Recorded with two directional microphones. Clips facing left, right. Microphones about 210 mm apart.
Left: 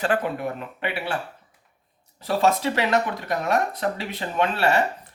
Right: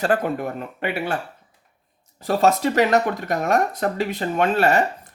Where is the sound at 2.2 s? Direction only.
45° right (ahead or behind).